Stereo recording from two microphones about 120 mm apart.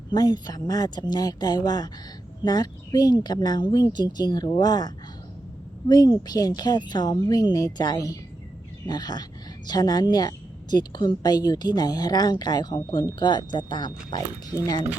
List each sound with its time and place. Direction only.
0.1 s a woman's voice: 35° left (ahead or behind)
5.9 s a woman's voice: 35° left (ahead or behind)